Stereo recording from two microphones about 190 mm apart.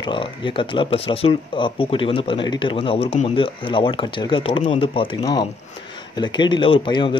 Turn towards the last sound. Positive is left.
turn(degrees=25)  # may be behind; listen again after turning